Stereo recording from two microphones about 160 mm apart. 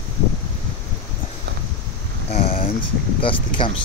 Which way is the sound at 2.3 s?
40° left (ahead or behind).